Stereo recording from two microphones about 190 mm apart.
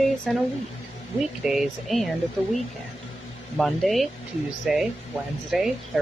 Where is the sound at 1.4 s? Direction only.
Centre (ahead or behind).